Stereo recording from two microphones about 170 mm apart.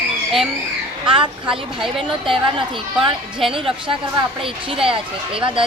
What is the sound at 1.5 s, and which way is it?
Speech, centre (ahead or behind).